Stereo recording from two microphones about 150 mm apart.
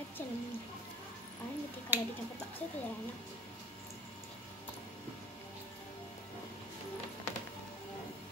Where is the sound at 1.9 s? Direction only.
15° right (ahead or behind).